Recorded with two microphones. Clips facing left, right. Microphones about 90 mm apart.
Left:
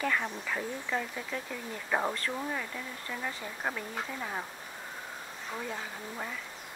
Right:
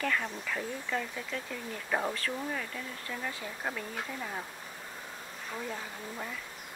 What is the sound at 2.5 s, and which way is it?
Speech, 5° left (ahead or behind).